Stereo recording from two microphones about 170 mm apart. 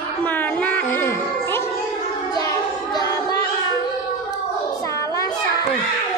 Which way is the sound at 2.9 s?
20° left (ahead or behind).